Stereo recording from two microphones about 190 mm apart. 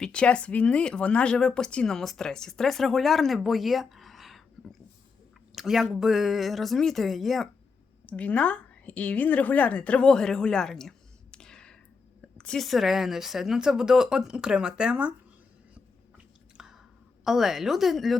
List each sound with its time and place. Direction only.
0.0 s a woman's voice: 5° left (ahead or behind)
16.1 s chewing: 5° right (ahead or behind)
17.2 s speech: centre (ahead or behind)